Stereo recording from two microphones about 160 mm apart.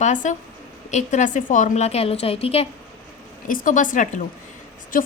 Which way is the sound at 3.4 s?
55° left (ahead or behind).